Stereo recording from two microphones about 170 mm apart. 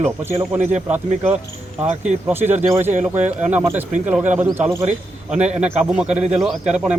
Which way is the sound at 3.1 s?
10° right (ahead or behind).